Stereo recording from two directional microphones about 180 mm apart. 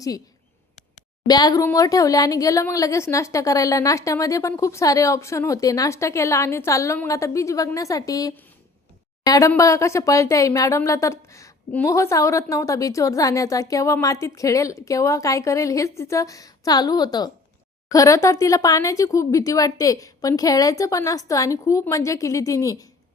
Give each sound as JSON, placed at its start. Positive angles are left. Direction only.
{"t": 1.3, "sound": "a woman's voice", "side_deg": 20}